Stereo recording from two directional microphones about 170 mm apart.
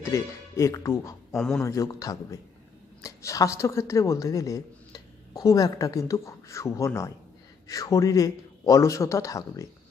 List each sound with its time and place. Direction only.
0.0 s speech: 15° left (ahead or behind)
1.3 s a man's voice: 5° left (ahead or behind)
1.6 s a man's voice: 20° left (ahead or behind)